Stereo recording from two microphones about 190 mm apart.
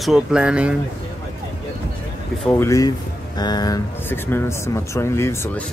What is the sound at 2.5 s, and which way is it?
Speech, 15° left (ahead or behind).